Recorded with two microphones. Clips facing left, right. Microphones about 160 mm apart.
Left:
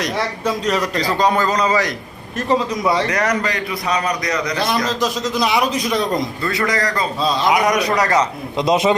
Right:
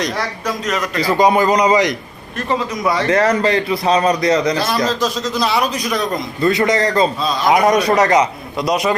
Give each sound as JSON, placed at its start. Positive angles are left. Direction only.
{"t": 0.2, "sound": "a man's voice", "side_deg": 30}
{"t": 0.9, "sound": "speech", "side_deg": -10}
{"t": 3.1, "sound": "a man's voice", "side_deg": -30}
{"t": 4.5, "sound": "a man's voice", "side_deg": 20}
{"t": 6.4, "sound": "a man's voice", "side_deg": -20}
{"t": 7.2, "sound": "a man's voice", "side_deg": 30}
{"t": 7.5, "sound": "a man's voice", "side_deg": -25}
{"t": 8.5, "sound": "a man's voice", "side_deg": 25}